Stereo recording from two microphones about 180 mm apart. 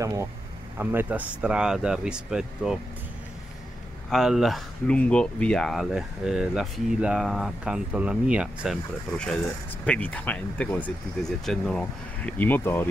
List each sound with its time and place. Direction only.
0.0 s speech: 15° right (ahead or behind)
4.1 s speech: centre (ahead or behind)
9.1 s speech: 5° left (ahead or behind)